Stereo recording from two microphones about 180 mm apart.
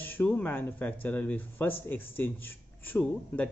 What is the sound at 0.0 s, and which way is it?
A man's voice, 10° left (ahead or behind).